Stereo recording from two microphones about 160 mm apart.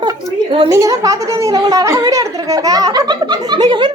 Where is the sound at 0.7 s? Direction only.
20° right (ahead or behind).